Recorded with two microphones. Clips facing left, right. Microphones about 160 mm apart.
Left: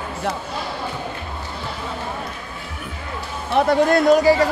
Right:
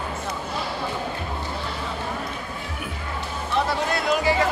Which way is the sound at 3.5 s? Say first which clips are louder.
Left 9 dB; 50° left (ahead or behind).